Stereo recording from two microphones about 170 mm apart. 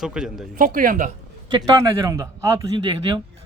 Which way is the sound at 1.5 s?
25° right (ahead or behind).